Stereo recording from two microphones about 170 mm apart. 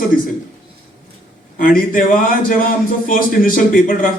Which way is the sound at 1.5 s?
55° left (ahead or behind).